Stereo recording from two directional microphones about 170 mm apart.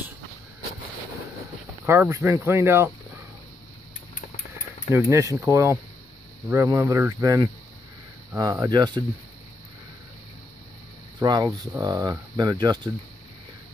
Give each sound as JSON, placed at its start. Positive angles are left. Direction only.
{"t": 1.9, "sound": "speech", "side_deg": -15}
{"t": 4.9, "sound": "speech", "side_deg": -15}
{"t": 11.1, "sound": "speech", "side_deg": -25}